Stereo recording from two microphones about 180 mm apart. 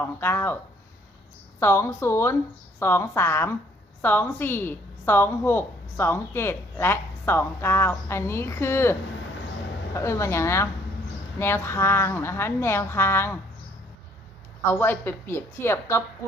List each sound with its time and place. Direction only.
0.0 s a woman's voice: 10° left (ahead or behind)
1.5 s a woman's voice: 15° left (ahead or behind)
14.6 s a woman's voice: 15° left (ahead or behind)